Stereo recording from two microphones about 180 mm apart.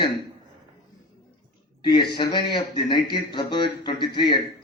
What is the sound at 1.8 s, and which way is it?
Speech, 25° left (ahead or behind).